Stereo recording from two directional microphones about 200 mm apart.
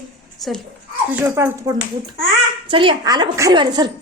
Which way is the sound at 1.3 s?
15° right (ahead or behind).